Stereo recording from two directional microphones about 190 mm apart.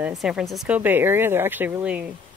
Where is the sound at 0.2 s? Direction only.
Centre (ahead or behind).